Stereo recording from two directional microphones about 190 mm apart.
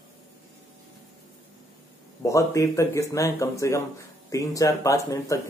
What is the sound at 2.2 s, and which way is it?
Speech, 15° left (ahead or behind).